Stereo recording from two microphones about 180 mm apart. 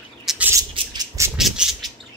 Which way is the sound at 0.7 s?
20° right (ahead or behind).